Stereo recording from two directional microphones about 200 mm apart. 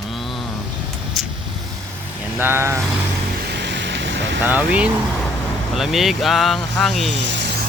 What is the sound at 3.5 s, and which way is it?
Vehicle, 60° right (ahead or behind).